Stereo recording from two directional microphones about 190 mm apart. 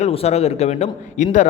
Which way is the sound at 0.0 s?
30° left (ahead or behind).